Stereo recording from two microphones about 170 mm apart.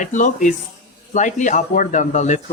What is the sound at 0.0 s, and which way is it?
Speech, 50° left (ahead or behind).